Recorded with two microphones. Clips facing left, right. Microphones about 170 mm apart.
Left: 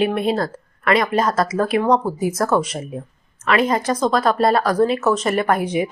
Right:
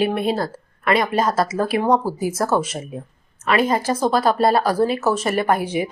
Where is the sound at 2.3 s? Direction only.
25° right (ahead or behind).